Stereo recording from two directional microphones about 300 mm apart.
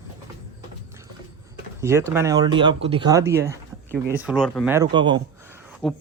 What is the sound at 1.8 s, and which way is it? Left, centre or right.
Speech, centre.